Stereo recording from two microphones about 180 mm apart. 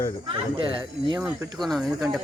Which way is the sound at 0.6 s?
30° right (ahead or behind).